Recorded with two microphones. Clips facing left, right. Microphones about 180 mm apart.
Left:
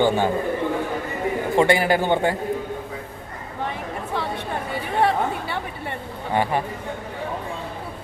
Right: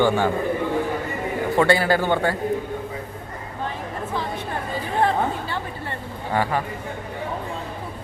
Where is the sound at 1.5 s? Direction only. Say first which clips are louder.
Even; 20° left (ahead or behind).